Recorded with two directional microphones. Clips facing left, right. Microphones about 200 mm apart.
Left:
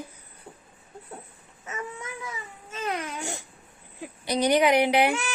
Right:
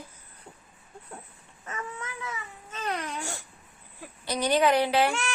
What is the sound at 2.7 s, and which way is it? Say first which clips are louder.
Baby cry: left 2 dB; 5° left (ahead or behind).